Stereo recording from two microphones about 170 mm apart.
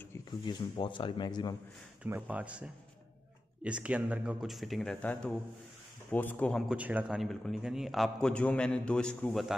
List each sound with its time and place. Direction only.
0.1 s speech: 25° left (ahead or behind)
2.0 s a man's voice: 10° right (ahead or behind); by 6.6 s 10° left (ahead or behind)
6.7 s a man's voice: 10° right (ahead or behind)